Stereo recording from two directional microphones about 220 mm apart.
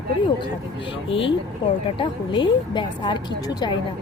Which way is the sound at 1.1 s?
25° left (ahead or behind).